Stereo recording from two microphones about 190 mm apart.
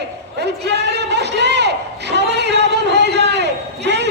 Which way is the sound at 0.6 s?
65° right (ahead or behind).